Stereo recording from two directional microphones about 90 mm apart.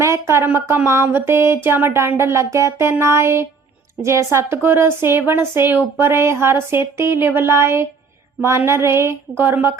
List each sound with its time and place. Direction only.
0.0 s a sound: 30° right (ahead or behind)
0.4 s a woman's voice: 20° right (ahead or behind)
3.0 s music: 30° right (ahead or behind)
4.0 s a woman's voice: 30° right (ahead or behind)